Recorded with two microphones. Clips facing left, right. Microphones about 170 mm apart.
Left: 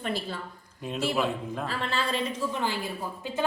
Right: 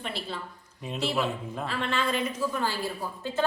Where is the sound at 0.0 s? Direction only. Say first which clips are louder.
Left 3 dB; 45° left (ahead or behind).